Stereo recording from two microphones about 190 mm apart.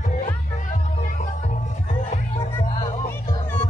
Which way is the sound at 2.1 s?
35° left (ahead or behind).